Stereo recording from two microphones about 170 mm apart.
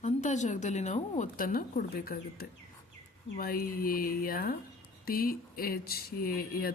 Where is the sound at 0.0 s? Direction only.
45° left (ahead or behind).